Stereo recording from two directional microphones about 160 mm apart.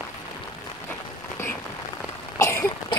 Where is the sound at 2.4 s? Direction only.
15° left (ahead or behind).